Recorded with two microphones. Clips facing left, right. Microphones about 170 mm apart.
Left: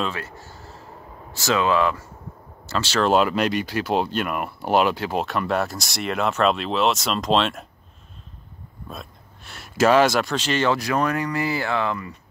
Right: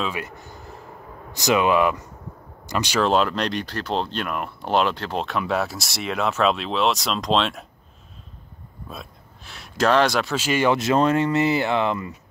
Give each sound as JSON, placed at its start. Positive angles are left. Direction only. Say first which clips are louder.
{"t": 0.1, "sound": "a sound", "louder": "right 2 dB", "side_deg": -15}
{"t": 1.3, "sound": "speech", "louder": "right 2 dB", "side_deg": -15}
{"t": 3.0, "sound": "speech", "louder": "left 2 dB", "side_deg": 5}
{"t": 8.8, "sound": "speech", "louder": "even", "side_deg": 0}
{"t": 10.8, "sound": "speech", "louder": "right 4 dB", "side_deg": -25}